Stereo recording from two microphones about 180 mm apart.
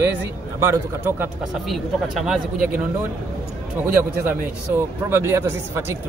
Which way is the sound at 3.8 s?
10° right (ahead or behind).